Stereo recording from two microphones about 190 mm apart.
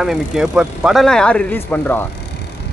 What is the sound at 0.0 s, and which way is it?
Speech, centre (ahead or behind).